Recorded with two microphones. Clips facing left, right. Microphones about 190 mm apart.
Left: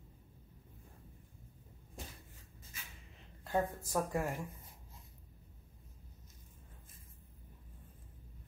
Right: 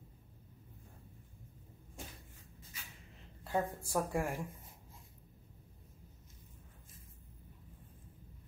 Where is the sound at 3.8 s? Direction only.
10° right (ahead or behind).